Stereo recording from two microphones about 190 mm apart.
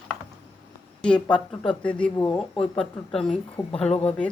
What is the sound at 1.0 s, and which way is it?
Speech, 5° left (ahead or behind).